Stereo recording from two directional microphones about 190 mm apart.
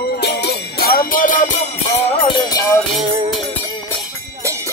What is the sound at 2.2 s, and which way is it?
Music, 20° left (ahead or behind).